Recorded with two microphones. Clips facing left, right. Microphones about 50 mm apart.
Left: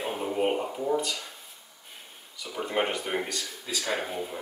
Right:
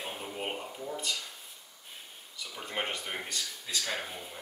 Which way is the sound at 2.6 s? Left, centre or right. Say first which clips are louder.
Left 7 dB; centre.